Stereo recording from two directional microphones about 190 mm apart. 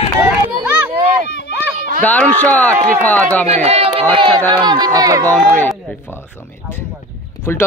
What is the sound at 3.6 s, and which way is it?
Speech, 30° right (ahead or behind).